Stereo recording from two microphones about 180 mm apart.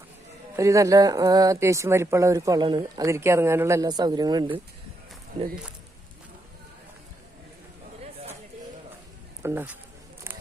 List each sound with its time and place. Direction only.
0.5 s speech: 15° right (ahead or behind)
9.4 s speech: 15° right (ahead or behind)